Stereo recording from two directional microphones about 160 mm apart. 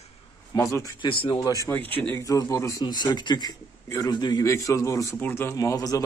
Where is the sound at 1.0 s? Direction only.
30° left (ahead or behind).